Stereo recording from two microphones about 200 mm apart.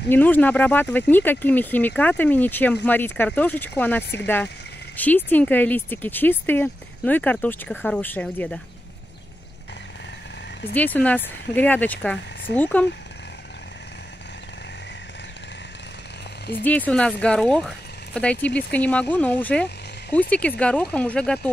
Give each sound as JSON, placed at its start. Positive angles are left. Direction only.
{"t": 0.1, "sound": "speech", "side_deg": 10}
{"t": 10.7, "sound": "speech", "side_deg": 10}
{"t": 16.6, "sound": "speech", "side_deg": 10}